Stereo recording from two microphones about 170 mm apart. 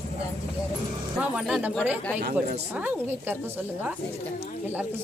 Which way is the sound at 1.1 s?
5° right (ahead or behind).